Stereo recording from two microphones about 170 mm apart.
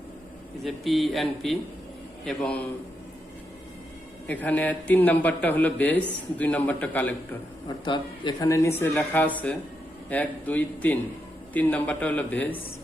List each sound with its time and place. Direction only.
0.6 s speech: centre (ahead or behind)
4.3 s a man's voice: 10° left (ahead or behind)
7.9 s a man's voice: 25° left (ahead or behind); by 12.5 s 10° left (ahead or behind)